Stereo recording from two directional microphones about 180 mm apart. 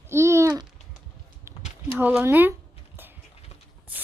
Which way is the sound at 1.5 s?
15° right (ahead or behind).